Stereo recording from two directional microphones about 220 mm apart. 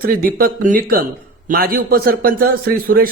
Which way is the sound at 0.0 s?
40° right (ahead or behind).